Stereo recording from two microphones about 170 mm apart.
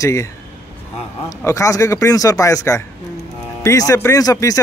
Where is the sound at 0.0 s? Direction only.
15° left (ahead or behind).